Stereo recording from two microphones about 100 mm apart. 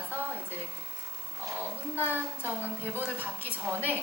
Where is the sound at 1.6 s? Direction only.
20° right (ahead or behind).